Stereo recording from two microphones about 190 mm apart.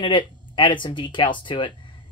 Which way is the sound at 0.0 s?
25° left (ahead or behind).